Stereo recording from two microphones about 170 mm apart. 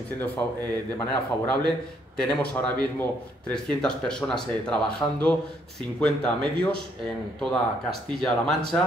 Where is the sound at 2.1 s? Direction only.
5° left (ahead or behind).